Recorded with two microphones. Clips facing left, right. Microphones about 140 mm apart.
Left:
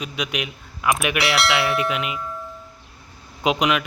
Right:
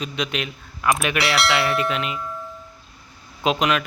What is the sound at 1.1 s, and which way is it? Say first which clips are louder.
Bell: even; centre (ahead or behind).